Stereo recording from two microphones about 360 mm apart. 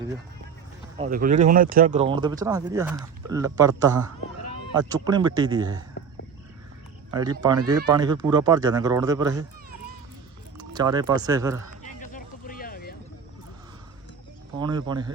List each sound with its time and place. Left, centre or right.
0.9 s speech: right
7.1 s speech: centre
10.6 s speech: centre
11.8 s a sound: left
14.6 s speech: centre